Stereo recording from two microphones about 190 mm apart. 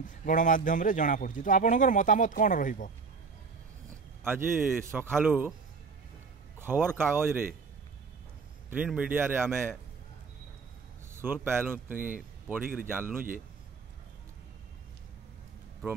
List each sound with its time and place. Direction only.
0.0 s a man's voice: 45° left (ahead or behind)
4.2 s a man's voice: 10° right (ahead or behind)
6.6 s a man's voice: 10° right (ahead or behind)
8.6 s a man's voice: 5° right (ahead or behind)
11.1 s a man's voice: 10° right (ahead or behind)